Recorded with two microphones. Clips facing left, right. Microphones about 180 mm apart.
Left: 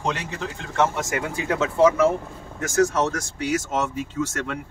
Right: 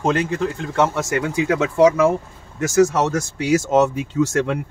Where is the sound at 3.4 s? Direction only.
75° right (ahead or behind).